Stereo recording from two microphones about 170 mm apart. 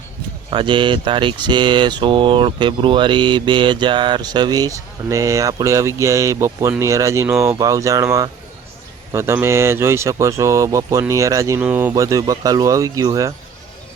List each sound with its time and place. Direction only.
0.5 s speech: 30° right (ahead or behind)